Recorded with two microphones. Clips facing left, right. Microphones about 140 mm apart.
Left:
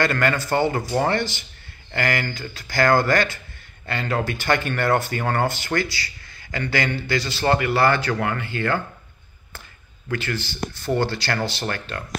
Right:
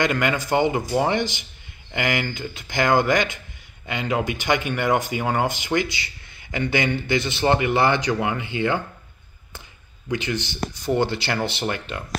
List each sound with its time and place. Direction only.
0.0 s speech: 15° right (ahead or behind)
10.0 s speech: 20° right (ahead or behind)